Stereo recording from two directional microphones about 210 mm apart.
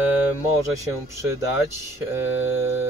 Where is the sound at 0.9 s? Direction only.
15° right (ahead or behind).